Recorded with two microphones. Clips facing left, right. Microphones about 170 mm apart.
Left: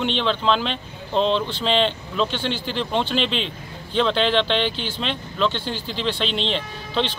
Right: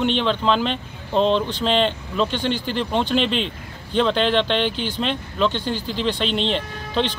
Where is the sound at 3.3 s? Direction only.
50° right (ahead or behind).